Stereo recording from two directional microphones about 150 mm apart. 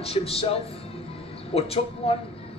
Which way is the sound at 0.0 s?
40° left (ahead or behind).